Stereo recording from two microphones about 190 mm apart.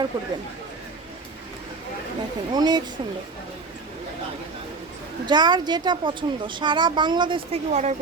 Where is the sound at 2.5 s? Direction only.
20° right (ahead or behind).